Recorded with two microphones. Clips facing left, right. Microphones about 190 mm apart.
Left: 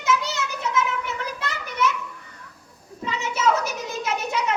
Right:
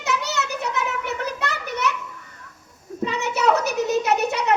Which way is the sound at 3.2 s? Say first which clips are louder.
Right 2 dB; 70° right (ahead or behind).